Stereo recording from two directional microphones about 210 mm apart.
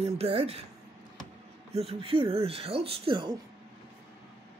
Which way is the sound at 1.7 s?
30° right (ahead or behind).